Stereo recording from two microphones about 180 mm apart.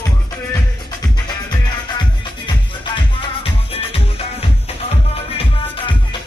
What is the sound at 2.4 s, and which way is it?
Music, 25° left (ahead or behind).